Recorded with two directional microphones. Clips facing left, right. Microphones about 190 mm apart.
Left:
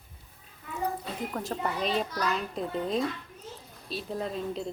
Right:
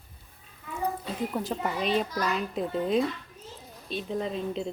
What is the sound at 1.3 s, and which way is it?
Speech, centre (ahead or behind).